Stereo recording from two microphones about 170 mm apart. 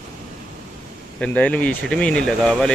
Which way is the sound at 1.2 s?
10° left (ahead or behind).